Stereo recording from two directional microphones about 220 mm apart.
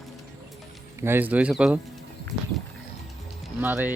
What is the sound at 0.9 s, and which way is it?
Speech, 10° right (ahead or behind).